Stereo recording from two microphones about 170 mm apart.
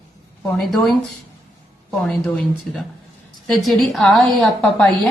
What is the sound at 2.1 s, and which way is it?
A woman's voice, 5° left (ahead or behind).